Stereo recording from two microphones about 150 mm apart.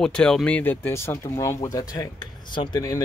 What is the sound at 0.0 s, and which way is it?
Speech, 5° left (ahead or behind).